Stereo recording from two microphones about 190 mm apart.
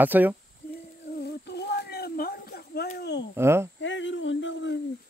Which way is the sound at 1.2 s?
60° left (ahead or behind).